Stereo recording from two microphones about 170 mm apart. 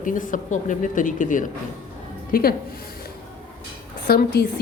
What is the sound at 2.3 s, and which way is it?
Speech, 60° left (ahead or behind).